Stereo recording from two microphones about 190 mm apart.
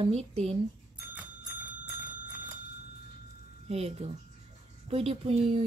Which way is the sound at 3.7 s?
35° right (ahead or behind).